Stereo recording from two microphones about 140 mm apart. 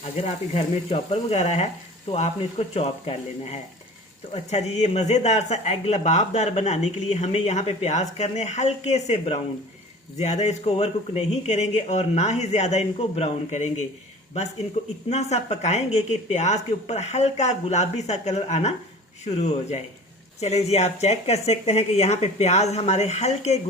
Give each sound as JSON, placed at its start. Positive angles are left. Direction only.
{"t": 0.0, "sound": "speech", "side_deg": 50}
{"t": 15.1, "sound": "speech", "side_deg": 50}